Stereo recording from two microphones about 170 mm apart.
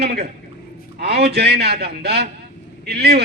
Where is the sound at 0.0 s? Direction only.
75° right (ahead or behind).